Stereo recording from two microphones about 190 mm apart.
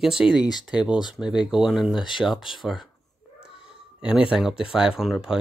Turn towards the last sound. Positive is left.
turn(degrees=-5)  # may be behind; listen again after turning